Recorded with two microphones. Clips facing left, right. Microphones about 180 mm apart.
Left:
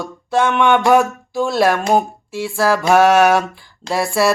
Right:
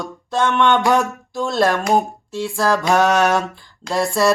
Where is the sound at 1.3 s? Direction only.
5° left (ahead or behind).